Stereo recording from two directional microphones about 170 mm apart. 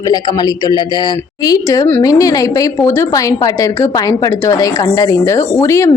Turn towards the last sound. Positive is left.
turn(degrees=15)  # may be behind; listen again after turning